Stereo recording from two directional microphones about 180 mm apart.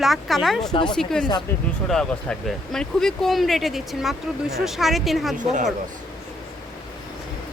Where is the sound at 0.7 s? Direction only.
25° left (ahead or behind).